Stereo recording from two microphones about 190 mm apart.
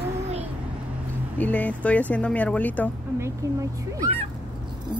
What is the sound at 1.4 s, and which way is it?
Speech, 10° left (ahead or behind).